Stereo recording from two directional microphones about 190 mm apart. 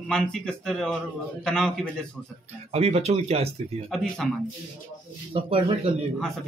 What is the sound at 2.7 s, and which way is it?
Speech, 35° right (ahead or behind).